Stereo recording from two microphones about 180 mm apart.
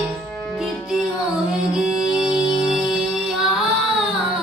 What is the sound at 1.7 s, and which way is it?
Music, 5° right (ahead or behind).